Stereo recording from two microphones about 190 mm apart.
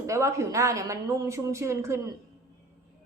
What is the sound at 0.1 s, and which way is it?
A woman's voice, 15° right (ahead or behind).